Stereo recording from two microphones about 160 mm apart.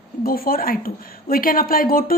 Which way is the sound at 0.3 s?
65° left (ahead or behind).